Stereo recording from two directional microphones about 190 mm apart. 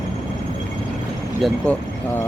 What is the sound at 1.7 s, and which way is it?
Speech, 5° left (ahead or behind).